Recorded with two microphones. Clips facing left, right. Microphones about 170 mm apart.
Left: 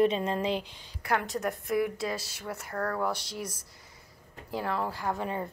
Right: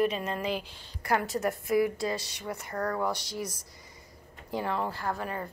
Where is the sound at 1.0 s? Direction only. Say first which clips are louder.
Right 2 dB; 5° right (ahead or behind).